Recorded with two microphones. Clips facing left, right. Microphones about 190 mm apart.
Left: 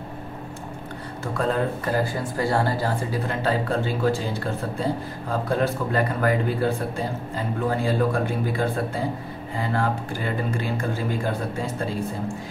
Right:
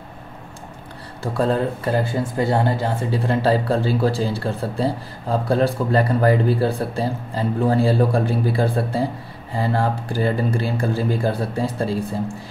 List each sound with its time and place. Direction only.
1.2 s a man's voice: 35° right (ahead or behind)